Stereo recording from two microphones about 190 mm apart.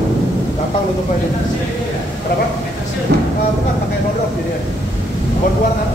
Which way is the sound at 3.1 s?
70° right (ahead or behind).